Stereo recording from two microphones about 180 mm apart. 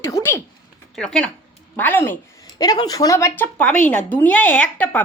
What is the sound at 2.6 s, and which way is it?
A woman's voice, 20° left (ahead or behind).